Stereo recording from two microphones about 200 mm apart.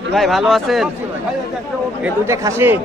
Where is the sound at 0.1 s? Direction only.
Centre (ahead or behind).